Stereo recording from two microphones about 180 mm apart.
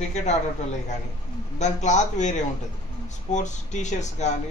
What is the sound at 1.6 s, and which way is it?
Speech, 40° left (ahead or behind).